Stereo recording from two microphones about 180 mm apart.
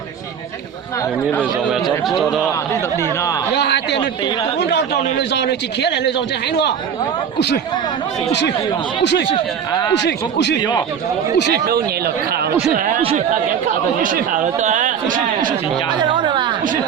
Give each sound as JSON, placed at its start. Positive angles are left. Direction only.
{"t": 2.0, "sound": "speech", "side_deg": 0}
{"t": 3.0, "sound": "speech", "side_deg": 20}
{"t": 3.5, "sound": "a man's voice", "side_deg": 70}
{"t": 9.3, "sound": "speech", "side_deg": 25}
{"t": 9.9, "sound": "a man's voice", "side_deg": 75}
{"t": 10.6, "sound": "speech", "side_deg": 25}
{"t": 11.3, "sound": "a man's voice", "side_deg": 70}
{"t": 11.6, "sound": "speech", "side_deg": -60}
{"t": 13.0, "sound": "speech", "side_deg": -30}
{"t": 13.3, "sound": "speech", "side_deg": -50}
{"t": 15.9, "sound": "a woman's voice", "side_deg": -25}